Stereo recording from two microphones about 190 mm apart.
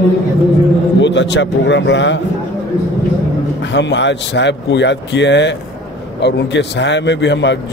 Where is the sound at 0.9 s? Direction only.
70° left (ahead or behind).